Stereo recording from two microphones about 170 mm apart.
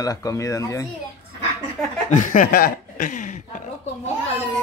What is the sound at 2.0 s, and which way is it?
Chuckle, 45° left (ahead or behind).